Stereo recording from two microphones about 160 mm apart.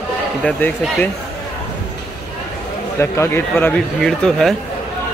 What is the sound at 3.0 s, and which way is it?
A man's voice, 15° left (ahead or behind).